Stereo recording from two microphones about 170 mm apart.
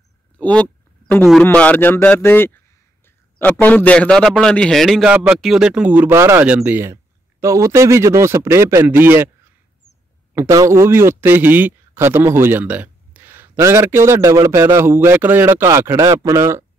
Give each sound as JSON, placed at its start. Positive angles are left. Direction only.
{"t": 0.4, "sound": "a sound", "side_deg": 10}
{"t": 1.4, "sound": "a man's voice", "side_deg": 10}
{"t": 5.1, "sound": "speech", "side_deg": -10}
{"t": 10.3, "sound": "speech", "side_deg": -15}